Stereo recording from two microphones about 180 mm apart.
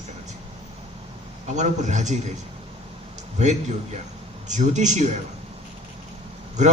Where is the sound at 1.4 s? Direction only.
40° right (ahead or behind).